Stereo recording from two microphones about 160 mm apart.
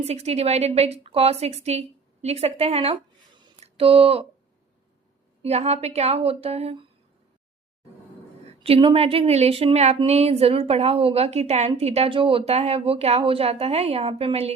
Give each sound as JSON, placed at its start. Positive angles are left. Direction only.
{"t": 0.0, "sound": "a woman's voice", "side_deg": -40}
{"t": 5.4, "sound": "a woman's voice", "side_deg": -40}
{"t": 8.6, "sound": "a woman's voice", "side_deg": -35}